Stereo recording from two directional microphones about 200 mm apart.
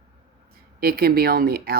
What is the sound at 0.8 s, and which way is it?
Speech, 50° right (ahead or behind).